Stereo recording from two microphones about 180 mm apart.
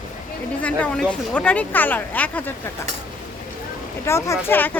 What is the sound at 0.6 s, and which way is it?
Speech, 10° left (ahead or behind).